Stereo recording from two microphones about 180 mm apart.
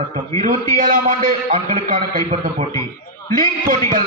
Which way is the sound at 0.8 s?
50° right (ahead or behind).